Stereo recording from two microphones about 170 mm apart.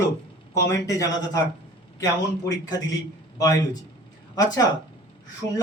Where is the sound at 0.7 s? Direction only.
20° left (ahead or behind).